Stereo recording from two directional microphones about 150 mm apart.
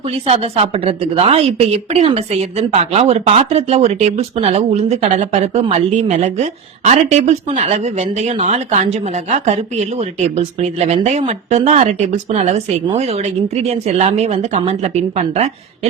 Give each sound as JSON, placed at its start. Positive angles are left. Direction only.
{"t": 0.1, "sound": "a woman's voice", "side_deg": -40}